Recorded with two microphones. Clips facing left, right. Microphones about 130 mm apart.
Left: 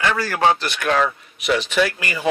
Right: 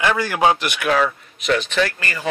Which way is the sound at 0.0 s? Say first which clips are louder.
Right 1 dB; 15° right (ahead or behind).